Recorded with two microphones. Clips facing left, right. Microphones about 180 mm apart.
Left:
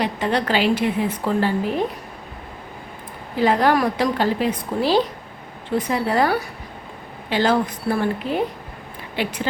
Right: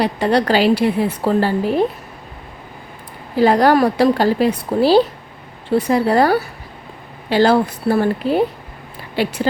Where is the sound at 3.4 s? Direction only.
35° right (ahead or behind).